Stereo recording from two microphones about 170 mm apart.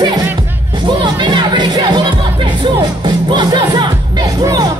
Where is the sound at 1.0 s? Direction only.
25° right (ahead or behind).